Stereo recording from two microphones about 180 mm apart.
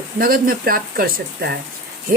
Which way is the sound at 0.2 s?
55° right (ahead or behind).